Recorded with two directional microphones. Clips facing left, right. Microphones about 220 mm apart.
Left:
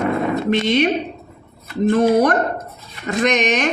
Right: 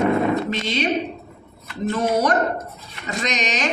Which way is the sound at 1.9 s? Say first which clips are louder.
Left 5 dB; 60° left (ahead or behind).